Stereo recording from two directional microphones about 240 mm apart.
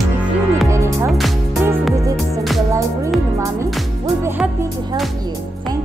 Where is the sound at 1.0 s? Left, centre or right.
Centre.